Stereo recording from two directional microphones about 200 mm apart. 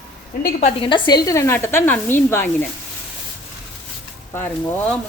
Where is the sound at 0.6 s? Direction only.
25° left (ahead or behind); by 2.6 s 10° left (ahead or behind).